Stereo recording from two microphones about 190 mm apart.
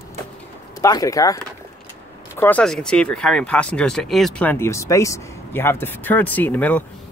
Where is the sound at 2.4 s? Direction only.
10° left (ahead or behind).